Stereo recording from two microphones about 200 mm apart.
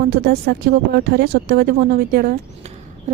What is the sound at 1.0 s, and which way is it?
Speech, 55° right (ahead or behind).